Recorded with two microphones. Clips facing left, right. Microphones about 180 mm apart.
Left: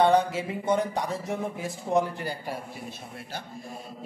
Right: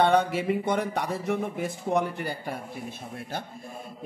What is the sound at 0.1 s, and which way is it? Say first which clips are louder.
Speech: right 1 dB; 60° right (ahead or behind).